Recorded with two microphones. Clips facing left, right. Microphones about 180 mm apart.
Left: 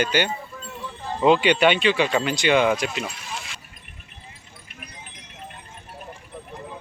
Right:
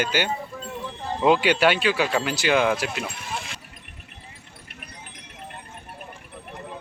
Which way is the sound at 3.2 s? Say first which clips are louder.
Right 2 dB; 55° right (ahead or behind).